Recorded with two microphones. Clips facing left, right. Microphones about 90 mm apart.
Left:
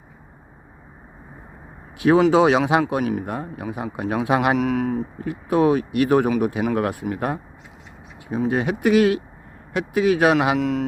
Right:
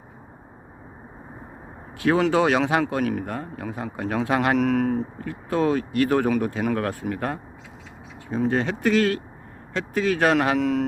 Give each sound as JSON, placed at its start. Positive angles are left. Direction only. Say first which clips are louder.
{"t": 2.0, "sound": "speech", "louder": "left 5 dB", "side_deg": 20}
{"t": 4.5, "sound": "a man's voice", "louder": "even", "side_deg": 5}
{"t": 5.1, "sound": "speech", "louder": "left 5 dB", "side_deg": 15}
{"t": 10.6, "sound": "a man's voice", "louder": "even", "side_deg": 0}